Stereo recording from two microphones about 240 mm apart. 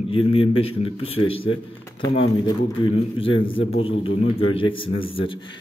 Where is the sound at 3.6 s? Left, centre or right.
Left.